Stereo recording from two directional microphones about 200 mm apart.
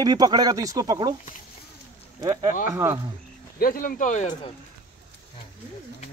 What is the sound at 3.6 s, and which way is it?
Speech, 45° left (ahead or behind).